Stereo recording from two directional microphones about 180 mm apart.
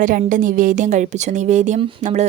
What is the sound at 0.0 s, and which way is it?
Speech, 50° right (ahead or behind).